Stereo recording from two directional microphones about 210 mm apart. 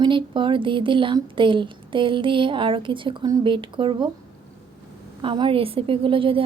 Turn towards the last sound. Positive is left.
turn(degrees=-25)  # may be behind; listen again after turning